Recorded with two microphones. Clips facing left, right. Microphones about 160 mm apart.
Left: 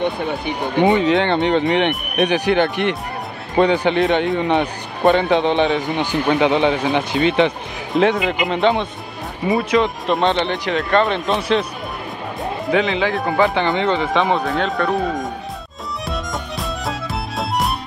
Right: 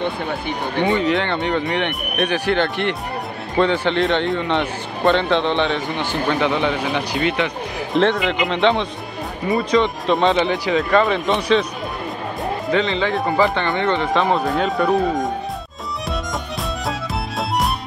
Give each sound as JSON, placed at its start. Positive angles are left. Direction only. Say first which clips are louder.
{"t": 0.0, "sound": "speech", "louder": "left 2 dB", "side_deg": 15}
{"t": 7.9, "sound": "speech", "louder": "left 1 dB", "side_deg": 5}
{"t": 12.7, "sound": "speech", "louder": "left 2 dB", "side_deg": 5}
{"t": 16.1, "sound": "music", "louder": "even", "side_deg": 0}